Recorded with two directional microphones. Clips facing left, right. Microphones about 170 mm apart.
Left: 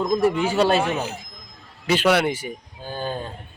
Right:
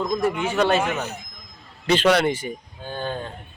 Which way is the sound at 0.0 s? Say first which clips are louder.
Left 3 dB; 10° left (ahead or behind).